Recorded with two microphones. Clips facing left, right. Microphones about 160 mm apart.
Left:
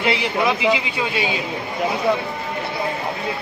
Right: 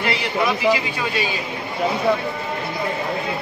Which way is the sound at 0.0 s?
20° left (ahead or behind).